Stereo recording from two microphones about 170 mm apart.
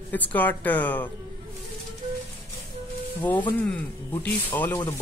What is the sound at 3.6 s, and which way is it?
Speech, 10° left (ahead or behind).